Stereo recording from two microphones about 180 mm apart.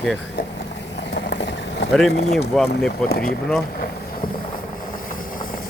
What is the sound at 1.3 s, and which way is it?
Vehicle, 80° left.